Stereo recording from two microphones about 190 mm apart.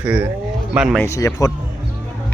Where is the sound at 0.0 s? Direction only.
10° right (ahead or behind).